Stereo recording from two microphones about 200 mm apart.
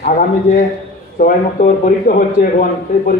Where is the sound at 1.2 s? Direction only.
45° left (ahead or behind).